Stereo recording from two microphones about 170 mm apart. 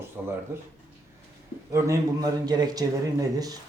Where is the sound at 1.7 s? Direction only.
15° right (ahead or behind).